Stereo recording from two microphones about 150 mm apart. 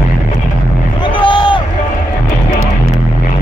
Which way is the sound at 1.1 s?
30° left (ahead or behind).